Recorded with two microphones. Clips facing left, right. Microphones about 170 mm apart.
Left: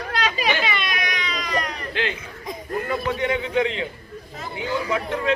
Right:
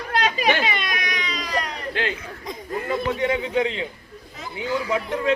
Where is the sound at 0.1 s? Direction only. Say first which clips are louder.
Right 3 dB; 50° right (ahead or behind).